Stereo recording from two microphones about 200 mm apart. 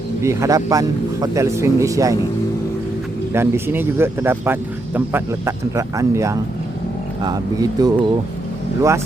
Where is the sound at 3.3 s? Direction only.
10° right (ahead or behind).